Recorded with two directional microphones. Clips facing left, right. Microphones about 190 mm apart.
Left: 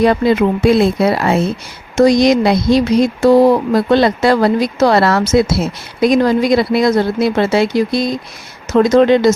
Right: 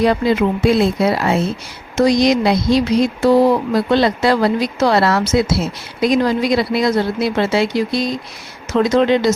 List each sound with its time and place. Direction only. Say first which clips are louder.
0.0 s speech: left 3 dB; 55° left (ahead or behind)